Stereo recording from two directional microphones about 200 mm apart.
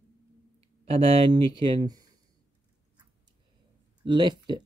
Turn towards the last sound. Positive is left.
turn(degrees=-20)  # may be behind; listen again after turning